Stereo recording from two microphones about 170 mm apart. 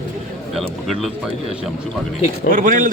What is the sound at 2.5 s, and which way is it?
Speech, 55° right (ahead or behind).